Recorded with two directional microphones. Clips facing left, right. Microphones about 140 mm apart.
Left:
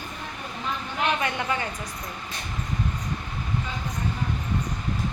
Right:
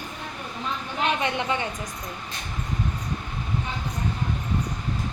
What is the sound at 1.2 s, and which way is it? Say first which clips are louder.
Speech: right 1 dB; 20° right (ahead or behind).